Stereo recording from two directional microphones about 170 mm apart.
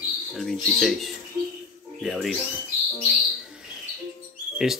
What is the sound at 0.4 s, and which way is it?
Speech, centre (ahead or behind).